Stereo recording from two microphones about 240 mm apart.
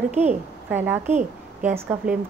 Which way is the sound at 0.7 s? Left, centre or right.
Centre.